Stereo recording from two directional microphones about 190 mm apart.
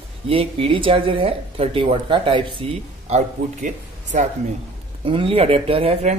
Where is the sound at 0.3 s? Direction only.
30° right (ahead or behind).